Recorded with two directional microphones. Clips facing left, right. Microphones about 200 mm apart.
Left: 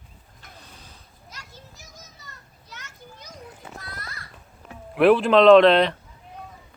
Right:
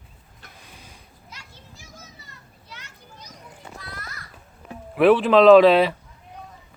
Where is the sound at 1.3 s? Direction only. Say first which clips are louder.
Left 1 dB; 40° left (ahead or behind).